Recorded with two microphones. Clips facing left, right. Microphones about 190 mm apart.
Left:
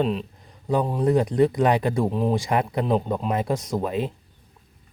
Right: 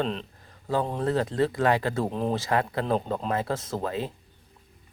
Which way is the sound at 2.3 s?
15° left (ahead or behind).